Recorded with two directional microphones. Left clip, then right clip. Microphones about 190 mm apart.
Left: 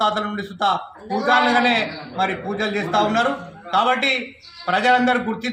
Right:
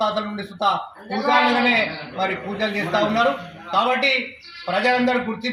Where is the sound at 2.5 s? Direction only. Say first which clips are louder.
Left 1 dB; 35° left (ahead or behind).